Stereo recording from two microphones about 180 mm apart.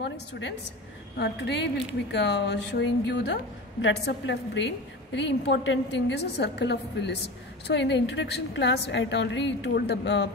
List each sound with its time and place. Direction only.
0.0 s a woman's voice: 70° left (ahead or behind)